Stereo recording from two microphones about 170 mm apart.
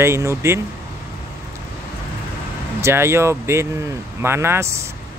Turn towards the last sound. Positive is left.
turn(degrees=-15)  # may be behind; listen again after turning